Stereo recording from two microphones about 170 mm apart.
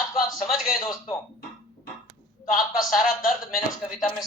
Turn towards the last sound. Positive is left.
turn(degrees=0)  # may be behind; listen again after turning